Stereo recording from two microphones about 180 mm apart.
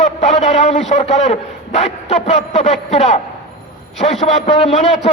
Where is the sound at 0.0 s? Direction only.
40° left (ahead or behind).